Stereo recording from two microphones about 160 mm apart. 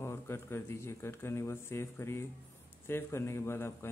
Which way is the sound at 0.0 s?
15° left (ahead or behind).